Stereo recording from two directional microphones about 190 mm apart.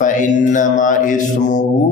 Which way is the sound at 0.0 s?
40° left (ahead or behind).